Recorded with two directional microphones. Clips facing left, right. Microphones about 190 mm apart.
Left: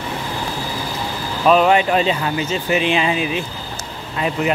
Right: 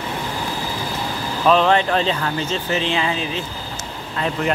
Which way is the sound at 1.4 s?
10° left (ahead or behind).